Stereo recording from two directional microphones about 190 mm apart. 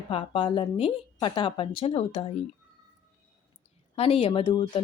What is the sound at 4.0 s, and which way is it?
Speech, 30° left (ahead or behind).